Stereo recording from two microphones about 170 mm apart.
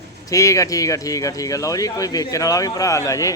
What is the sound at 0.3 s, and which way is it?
Speech, 20° left (ahead or behind).